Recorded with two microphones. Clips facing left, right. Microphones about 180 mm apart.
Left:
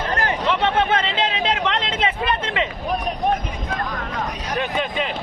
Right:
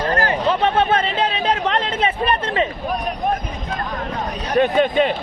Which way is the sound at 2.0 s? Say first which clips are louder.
Right 3 dB; 35° right (ahead or behind).